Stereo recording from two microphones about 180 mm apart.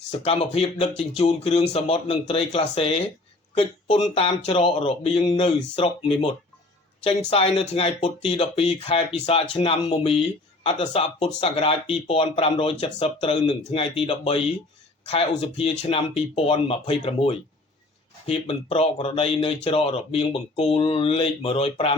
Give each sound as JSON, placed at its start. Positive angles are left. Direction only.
{"t": 0.1, "sound": "speech", "side_deg": 35}